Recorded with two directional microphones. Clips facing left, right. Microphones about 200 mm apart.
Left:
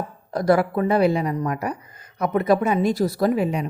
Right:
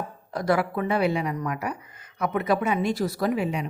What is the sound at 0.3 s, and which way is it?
Speech, 40° left (ahead or behind).